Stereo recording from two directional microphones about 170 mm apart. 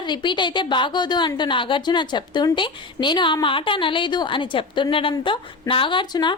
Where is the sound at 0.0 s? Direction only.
25° left (ahead or behind).